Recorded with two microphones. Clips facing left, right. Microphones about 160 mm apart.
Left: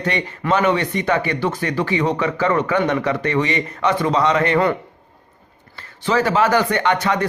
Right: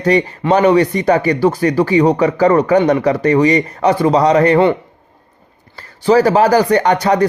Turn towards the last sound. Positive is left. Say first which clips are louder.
# right 6 dB
turn(degrees=-35)  # may be behind; listen again after turning